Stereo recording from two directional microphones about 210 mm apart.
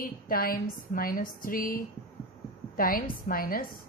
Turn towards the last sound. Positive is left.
turn(degrees=45)  # may be behind; listen again after turning